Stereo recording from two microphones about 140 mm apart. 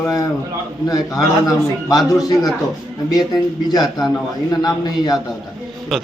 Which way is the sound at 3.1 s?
30° left (ahead or behind).